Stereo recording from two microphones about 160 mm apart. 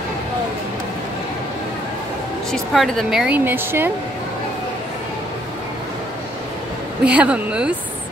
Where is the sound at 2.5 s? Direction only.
5° left (ahead or behind); by 3.9 s 15° right (ahead or behind).